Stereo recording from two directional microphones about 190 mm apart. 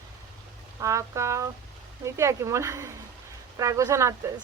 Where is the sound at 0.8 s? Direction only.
15° right (ahead or behind).